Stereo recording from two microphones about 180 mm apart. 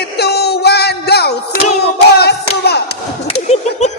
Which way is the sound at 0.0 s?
65° left (ahead or behind).